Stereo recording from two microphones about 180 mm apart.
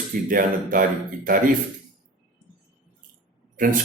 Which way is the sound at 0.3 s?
50° right (ahead or behind).